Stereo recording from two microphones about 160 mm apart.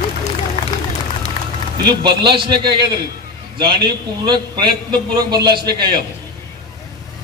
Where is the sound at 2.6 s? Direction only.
30° right (ahead or behind).